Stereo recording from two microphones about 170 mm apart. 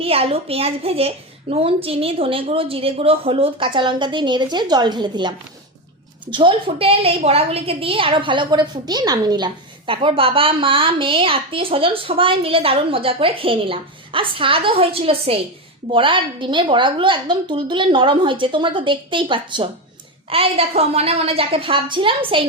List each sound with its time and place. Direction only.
0.0 s a woman's voice: 35° right (ahead or behind)
6.3 s a woman's voice: 30° right (ahead or behind)